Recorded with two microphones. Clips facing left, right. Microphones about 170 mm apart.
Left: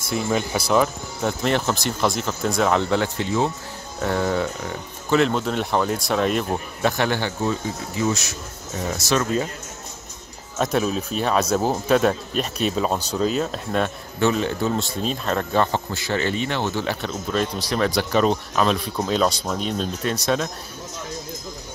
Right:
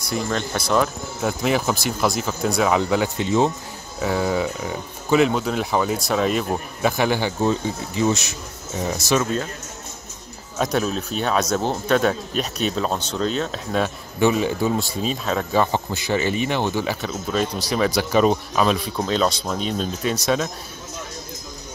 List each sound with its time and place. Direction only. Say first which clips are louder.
0.1 s speech: left 2 dB; 5° left (ahead or behind)
1.2 s speech: right 1 dB; 5° right (ahead or behind)
4.0 s speech: right 1 dB; 5° right (ahead or behind)
7.4 s speech: right 3 dB; 25° right (ahead or behind)
8.7 s speech: right 1 dB; 10° right (ahead or behind)
10.6 s speech: even; centre (ahead or behind)
14.2 s speech: right 2 dB; 10° right (ahead or behind)